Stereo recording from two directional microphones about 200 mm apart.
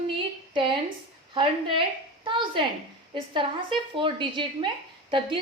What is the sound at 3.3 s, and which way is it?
A woman's voice, 25° right (ahead or behind).